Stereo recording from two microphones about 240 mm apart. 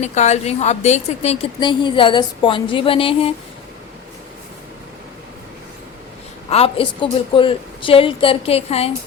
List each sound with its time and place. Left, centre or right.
0.0 s a woman's voice: left
6.5 s a woman's voice: left